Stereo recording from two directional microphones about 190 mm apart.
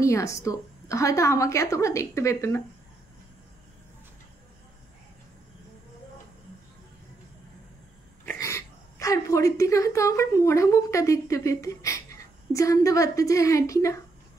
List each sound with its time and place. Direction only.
0.0 s a woman's voice: 15° left (ahead or behind)
8.4 s speech: 15° left (ahead or behind)